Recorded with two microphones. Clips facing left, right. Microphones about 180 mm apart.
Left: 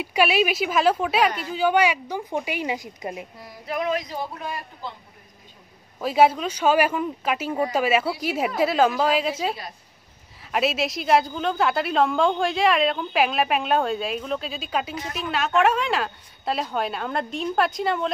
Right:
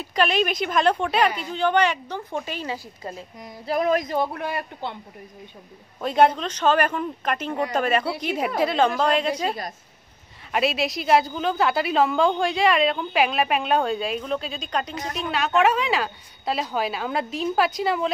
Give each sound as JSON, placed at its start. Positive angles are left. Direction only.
{"t": 0.0, "sound": "a woman's voice", "side_deg": 10}
{"t": 3.6, "sound": "speech", "side_deg": -40}
{"t": 5.9, "sound": "a woman's voice", "side_deg": 5}